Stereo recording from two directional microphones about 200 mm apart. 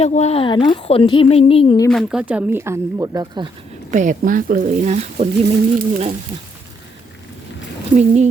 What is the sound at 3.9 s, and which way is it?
Speech, 40° right (ahead or behind).